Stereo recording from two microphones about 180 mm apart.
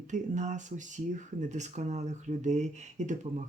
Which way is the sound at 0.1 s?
40° right (ahead or behind).